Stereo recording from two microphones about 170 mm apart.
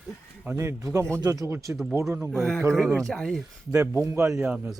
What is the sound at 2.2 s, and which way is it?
Speech, 15° right (ahead or behind).